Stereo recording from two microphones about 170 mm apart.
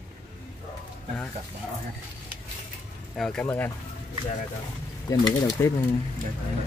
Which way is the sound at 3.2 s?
5° left (ahead or behind).